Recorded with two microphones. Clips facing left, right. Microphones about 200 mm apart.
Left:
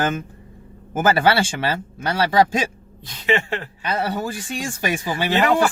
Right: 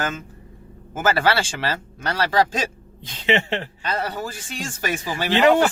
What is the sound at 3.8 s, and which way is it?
Speech, 10° left (ahead or behind).